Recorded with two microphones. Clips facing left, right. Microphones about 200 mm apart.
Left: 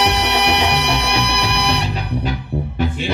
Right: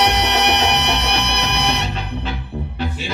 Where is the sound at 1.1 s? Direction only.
30° left (ahead or behind).